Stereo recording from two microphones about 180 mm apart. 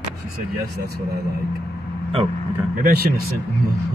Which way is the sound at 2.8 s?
60° right (ahead or behind).